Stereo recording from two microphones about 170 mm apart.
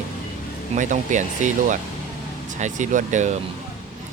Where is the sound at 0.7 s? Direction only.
45° right (ahead or behind).